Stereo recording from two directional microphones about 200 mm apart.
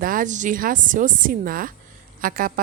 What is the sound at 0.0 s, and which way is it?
A woman's voice, 45° right (ahead or behind).